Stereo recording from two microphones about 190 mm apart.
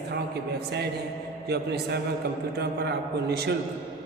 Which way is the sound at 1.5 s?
55° right (ahead or behind).